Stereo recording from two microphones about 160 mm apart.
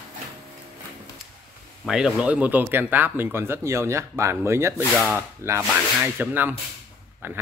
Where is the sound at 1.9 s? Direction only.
5° right (ahead or behind).